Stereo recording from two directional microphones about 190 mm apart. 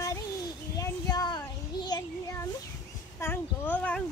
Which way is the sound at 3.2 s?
10° left (ahead or behind).